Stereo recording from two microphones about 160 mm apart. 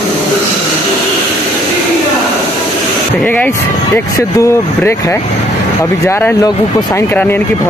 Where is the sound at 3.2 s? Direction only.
10° left (ahead or behind).